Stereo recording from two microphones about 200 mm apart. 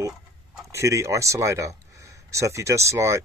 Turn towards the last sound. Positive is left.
turn(degrees=-15)  # may be behind; listen again after turning